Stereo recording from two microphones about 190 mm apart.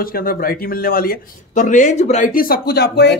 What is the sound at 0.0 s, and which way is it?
Speech, 50° left (ahead or behind).